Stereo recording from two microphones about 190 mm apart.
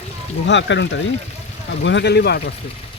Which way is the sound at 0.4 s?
70° left (ahead or behind).